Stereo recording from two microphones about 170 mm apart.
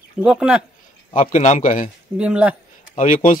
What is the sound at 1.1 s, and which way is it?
Speech, 45° left (ahead or behind).